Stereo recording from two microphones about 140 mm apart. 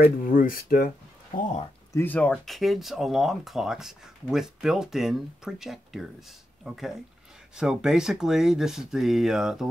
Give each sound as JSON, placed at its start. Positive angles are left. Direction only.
{"t": 0.0, "sound": "speech", "side_deg": 90}
{"t": 1.9, "sound": "speech", "side_deg": 15}